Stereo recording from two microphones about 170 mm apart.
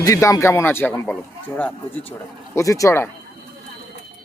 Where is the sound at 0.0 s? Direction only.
20° left (ahead or behind).